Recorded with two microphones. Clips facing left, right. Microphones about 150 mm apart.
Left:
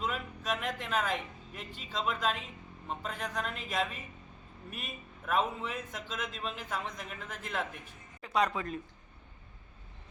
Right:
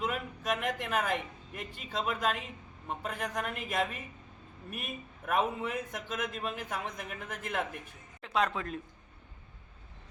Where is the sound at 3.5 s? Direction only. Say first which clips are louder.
Right 1 dB; 60° right (ahead or behind).